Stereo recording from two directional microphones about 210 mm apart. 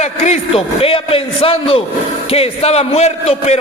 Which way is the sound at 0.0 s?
30° left (ahead or behind).